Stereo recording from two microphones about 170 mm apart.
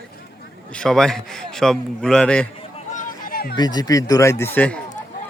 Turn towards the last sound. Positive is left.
turn(degrees=10)  # may be behind; listen again after turning